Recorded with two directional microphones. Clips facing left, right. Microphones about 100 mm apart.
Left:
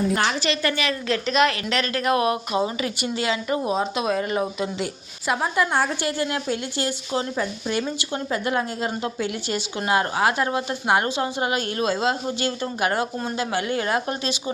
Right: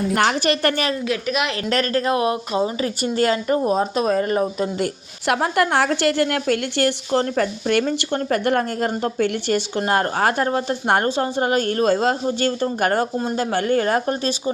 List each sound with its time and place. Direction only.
0.1 s a woman's voice: 55° right (ahead or behind)
1.0 s a woman's voice: 10° right (ahead or behind)
1.7 s a woman's voice: 45° right (ahead or behind)
2.0 s speech: 25° right (ahead or behind)
2.8 s a woman's voice: 45° right (ahead or behind)
4.8 s a woman's voice: 65° right (ahead or behind); by 14.3 s 45° right (ahead or behind)